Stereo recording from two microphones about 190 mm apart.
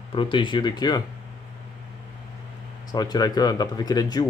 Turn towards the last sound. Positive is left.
turn(degrees=20)  # may be behind; listen again after turning